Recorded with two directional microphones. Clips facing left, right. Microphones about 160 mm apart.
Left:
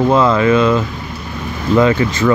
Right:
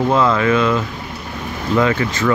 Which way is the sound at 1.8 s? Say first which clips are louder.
Left 4 dB; 25° left (ahead or behind).